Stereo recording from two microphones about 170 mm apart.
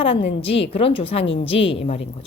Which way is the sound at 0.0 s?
35° left (ahead or behind).